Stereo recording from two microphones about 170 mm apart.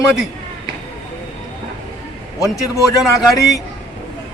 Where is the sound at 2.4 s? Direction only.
20° left (ahead or behind).